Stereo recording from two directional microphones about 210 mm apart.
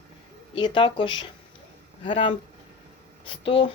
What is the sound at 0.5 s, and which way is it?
Speech, 25° left (ahead or behind).